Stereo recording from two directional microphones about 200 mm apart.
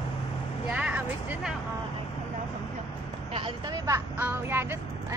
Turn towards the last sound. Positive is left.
turn(degrees=-10)  # may be behind; listen again after turning